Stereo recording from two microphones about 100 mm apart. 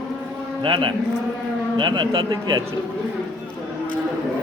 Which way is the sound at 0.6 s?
55° right (ahead or behind).